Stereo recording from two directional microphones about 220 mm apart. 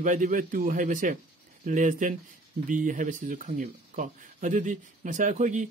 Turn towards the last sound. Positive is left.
turn(degrees=-35)  # may be behind; listen again after turning